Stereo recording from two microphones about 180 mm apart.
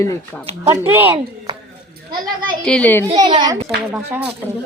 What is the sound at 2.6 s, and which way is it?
Speech, 5° left (ahead or behind).